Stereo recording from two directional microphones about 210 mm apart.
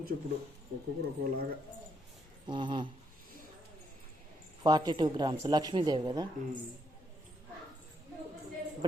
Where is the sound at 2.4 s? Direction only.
20° right (ahead or behind).